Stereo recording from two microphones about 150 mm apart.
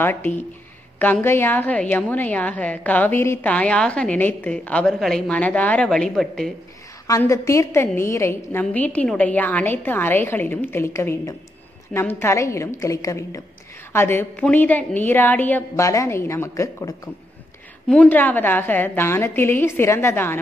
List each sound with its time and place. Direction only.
0.0 s a woman's voice: 15° left (ahead or behind)
7.1 s a woman's voice: 20° left (ahead or behind)
17.8 s a woman's voice: 10° left (ahead or behind)